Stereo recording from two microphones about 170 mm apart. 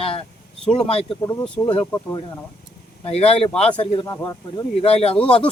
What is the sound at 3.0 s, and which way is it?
Speech, 40° left (ahead or behind).